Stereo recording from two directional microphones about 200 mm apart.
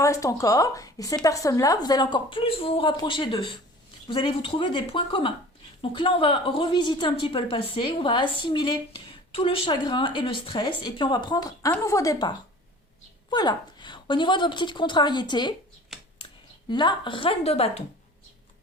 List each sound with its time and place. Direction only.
0.0 s a woman's voice: 15° left (ahead or behind)
13.3 s a woman's voice: 20° left (ahead or behind)
16.6 s a woman's voice: 20° left (ahead or behind)